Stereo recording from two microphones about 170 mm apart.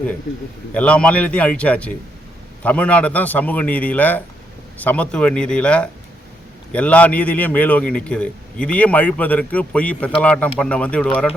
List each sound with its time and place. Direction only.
0.7 s a man's voice: 5° left (ahead or behind)